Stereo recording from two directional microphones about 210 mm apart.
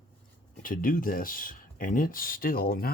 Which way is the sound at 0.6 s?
40° left (ahead or behind).